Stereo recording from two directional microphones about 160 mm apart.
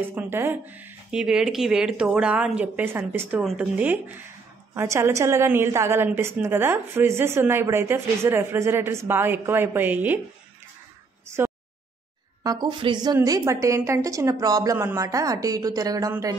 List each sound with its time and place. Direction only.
0.0 s a woman's voice: 15° right (ahead or behind)
12.4 s a woman's voice: 25° right (ahead or behind)